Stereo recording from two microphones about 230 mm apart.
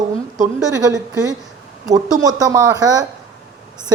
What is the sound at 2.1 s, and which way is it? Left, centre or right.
Speech, centre.